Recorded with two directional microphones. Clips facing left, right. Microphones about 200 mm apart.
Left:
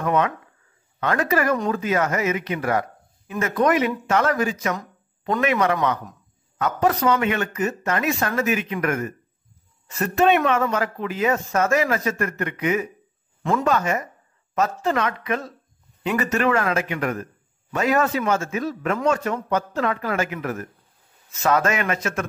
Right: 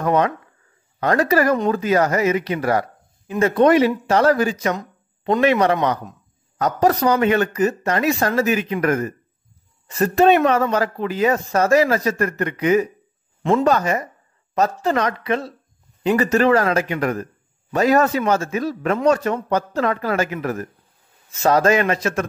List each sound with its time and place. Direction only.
0.0 s speech: 35° right (ahead or behind)
21.4 s speech: 35° right (ahead or behind)